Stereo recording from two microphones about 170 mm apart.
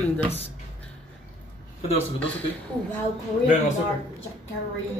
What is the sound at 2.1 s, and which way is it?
Speech, 10° left (ahead or behind).